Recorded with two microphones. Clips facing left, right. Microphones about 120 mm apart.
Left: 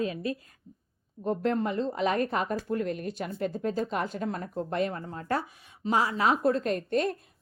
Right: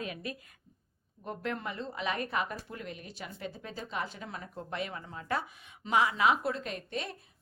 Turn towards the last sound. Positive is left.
turn(degrees=45)  # may be behind; listen again after turning